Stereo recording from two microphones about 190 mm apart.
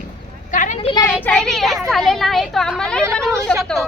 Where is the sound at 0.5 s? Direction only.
40° left (ahead or behind).